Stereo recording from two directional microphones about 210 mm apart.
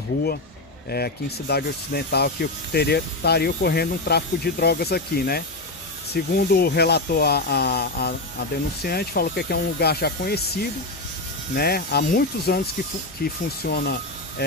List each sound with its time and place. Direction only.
0.8 s speech: 50° left (ahead or behind)